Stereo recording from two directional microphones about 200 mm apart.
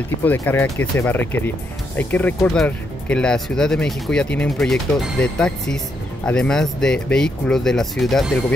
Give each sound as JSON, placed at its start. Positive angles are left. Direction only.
{"t": 0.2, "sound": "speech", "side_deg": 10}